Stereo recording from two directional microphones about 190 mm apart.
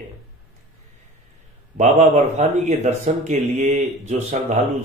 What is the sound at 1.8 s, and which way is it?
Speech, 40° right (ahead or behind).